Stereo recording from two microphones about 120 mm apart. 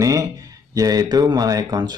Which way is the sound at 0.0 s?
30° right (ahead or behind).